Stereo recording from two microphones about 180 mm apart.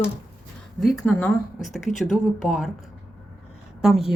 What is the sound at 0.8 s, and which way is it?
Speech, centre (ahead or behind).